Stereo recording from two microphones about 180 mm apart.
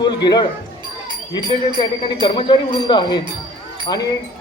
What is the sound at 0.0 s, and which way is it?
Speech, 25° left (ahead or behind).